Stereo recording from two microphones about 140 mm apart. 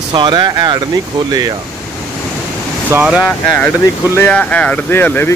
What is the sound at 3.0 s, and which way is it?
Speech, 5° right (ahead or behind).